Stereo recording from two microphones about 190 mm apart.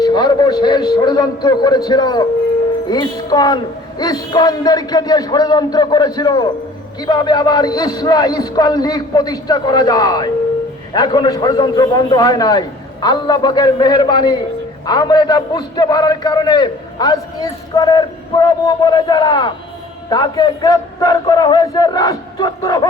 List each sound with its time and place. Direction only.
0.0 s a man's voice: 20° left (ahead or behind)